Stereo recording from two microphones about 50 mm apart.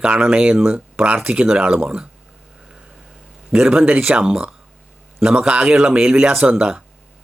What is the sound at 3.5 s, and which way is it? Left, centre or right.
Speech, centre.